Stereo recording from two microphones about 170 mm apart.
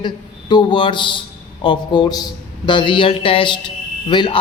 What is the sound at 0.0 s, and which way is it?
A man's voice, 25° left (ahead or behind).